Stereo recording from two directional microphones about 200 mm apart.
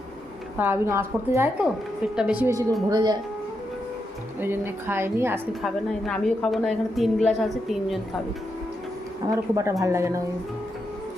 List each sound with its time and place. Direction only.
0.6 s a woman's voice: 10° right (ahead or behind)
4.4 s a woman's voice: 10° right (ahead or behind)
5.6 s a woman's voice: 5° left (ahead or behind)
9.3 s a woman's voice: 15° right (ahead or behind)